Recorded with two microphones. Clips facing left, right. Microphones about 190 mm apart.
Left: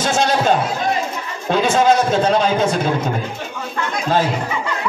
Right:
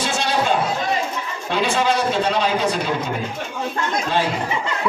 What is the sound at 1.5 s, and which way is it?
Speech, 45° left (ahead or behind).